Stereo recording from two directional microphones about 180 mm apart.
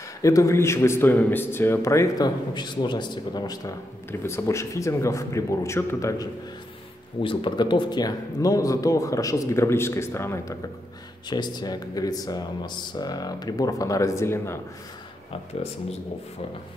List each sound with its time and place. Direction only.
0.2 s speech: 15° left (ahead or behind)
7.2 s speech: 30° left (ahead or behind)